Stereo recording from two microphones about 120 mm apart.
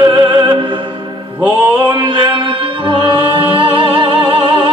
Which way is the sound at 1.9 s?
40° right (ahead or behind).